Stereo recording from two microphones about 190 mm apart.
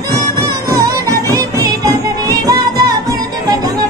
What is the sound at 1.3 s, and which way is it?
Music, 20° right (ahead or behind).